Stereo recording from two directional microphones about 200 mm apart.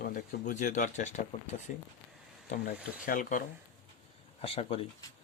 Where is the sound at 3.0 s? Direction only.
40° left (ahead or behind).